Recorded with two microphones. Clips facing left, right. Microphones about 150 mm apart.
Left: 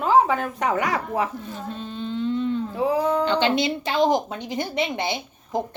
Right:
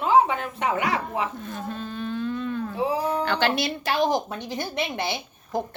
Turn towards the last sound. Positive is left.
turn(degrees=20)  # may be behind; listen again after turning